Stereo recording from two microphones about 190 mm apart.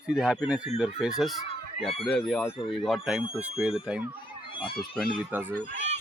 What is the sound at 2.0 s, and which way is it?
Speech, 5° left (ahead or behind).